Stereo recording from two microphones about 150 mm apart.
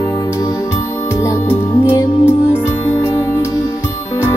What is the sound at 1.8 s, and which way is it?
Music, 10° right (ahead or behind).